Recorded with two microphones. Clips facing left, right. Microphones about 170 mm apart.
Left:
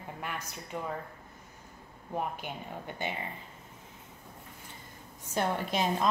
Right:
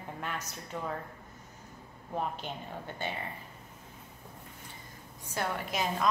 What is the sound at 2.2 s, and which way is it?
Speech, 10° left (ahead or behind).